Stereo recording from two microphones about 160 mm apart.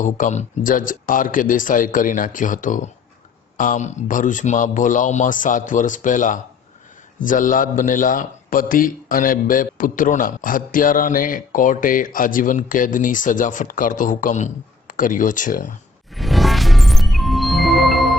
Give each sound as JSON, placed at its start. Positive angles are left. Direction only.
{"t": 0.0, "sound": "a man's voice", "side_deg": 50}
{"t": 16.1, "sound": "music", "side_deg": 0}